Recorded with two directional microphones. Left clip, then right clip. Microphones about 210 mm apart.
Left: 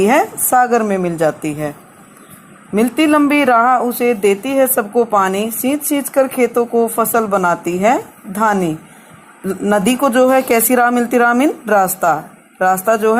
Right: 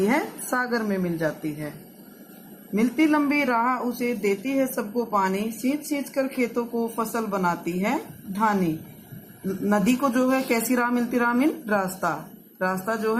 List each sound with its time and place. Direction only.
0.1 s speech: 45° left (ahead or behind)
2.7 s speech: 50° left (ahead or behind)